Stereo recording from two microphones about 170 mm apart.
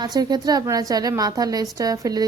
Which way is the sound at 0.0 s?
25° right (ahead or behind).